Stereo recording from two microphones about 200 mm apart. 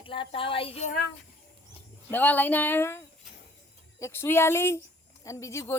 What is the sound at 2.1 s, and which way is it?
Speech, 10° left (ahead or behind).